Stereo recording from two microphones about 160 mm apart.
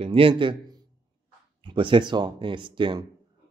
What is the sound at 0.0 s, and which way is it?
Speech, 35° right (ahead or behind).